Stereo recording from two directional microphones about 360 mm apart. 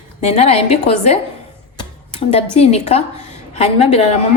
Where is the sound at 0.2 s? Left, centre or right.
Centre.